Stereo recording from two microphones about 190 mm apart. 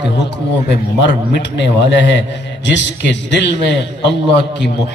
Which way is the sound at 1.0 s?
65° left (ahead or behind).